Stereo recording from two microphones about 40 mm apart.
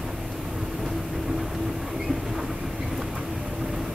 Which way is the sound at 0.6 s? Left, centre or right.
Centre.